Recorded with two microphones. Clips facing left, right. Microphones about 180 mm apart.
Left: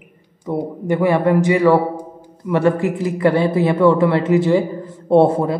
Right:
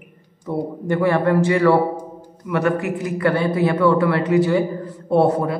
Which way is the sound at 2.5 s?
30° left (ahead or behind).